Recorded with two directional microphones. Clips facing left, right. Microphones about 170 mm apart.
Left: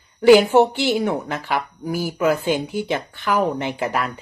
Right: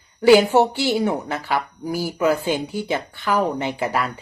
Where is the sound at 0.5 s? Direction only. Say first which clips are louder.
Left 2 dB; 15° left (ahead or behind).